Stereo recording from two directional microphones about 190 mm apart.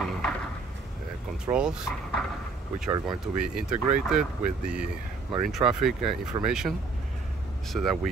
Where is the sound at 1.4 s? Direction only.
5° right (ahead or behind).